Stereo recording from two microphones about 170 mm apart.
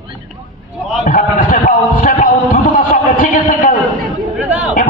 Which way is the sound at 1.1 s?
55° left (ahead or behind).